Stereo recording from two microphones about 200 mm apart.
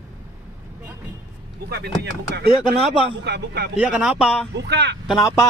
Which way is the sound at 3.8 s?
5° right (ahead or behind).